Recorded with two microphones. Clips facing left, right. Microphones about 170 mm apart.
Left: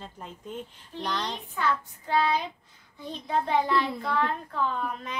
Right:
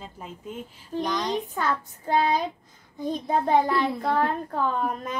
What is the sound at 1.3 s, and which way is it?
A child's voice, 40° right (ahead or behind).